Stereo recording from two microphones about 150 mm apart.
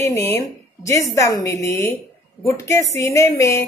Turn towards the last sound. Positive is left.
turn(degrees=20)  # may be behind; listen again after turning